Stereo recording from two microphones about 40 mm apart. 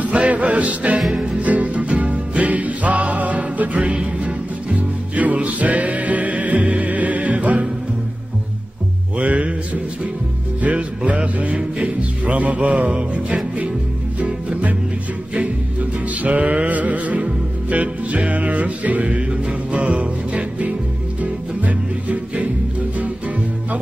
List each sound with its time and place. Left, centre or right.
0.0 s music: right
9.2 s music: right
10.6 s music: right
16.2 s music: right